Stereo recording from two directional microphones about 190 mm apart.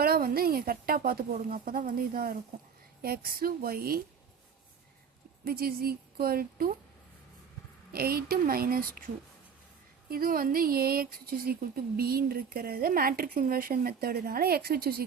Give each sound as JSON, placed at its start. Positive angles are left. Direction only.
{"t": 0.0, "sound": "speech", "side_deg": -50}
{"t": 5.5, "sound": "speech", "side_deg": -50}
{"t": 7.9, "sound": "speech", "side_deg": -55}
{"t": 10.1, "sound": "speech", "side_deg": -50}